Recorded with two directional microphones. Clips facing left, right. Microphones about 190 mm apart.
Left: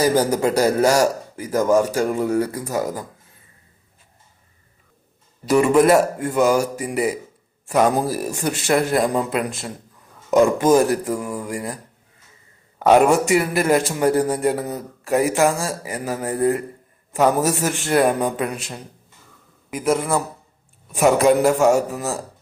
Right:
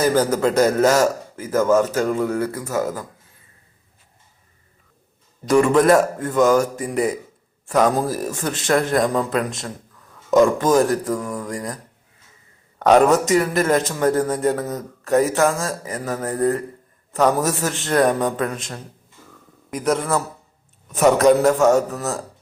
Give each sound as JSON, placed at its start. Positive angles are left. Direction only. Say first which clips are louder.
{"t": 0.0, "sound": "a man's voice", "louder": "even", "side_deg": 10}
{"t": 5.5, "sound": "a man's voice", "louder": "even", "side_deg": 5}
{"t": 12.8, "sound": "a man's voice", "louder": "even", "side_deg": 10}